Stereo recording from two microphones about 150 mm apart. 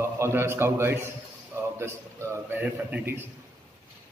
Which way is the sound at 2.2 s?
15° right (ahead or behind).